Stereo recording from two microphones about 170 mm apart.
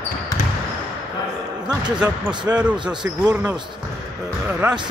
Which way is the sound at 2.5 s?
5° right (ahead or behind).